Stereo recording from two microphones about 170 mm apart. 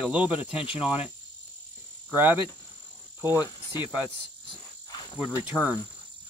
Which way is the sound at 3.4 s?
25° left (ahead or behind).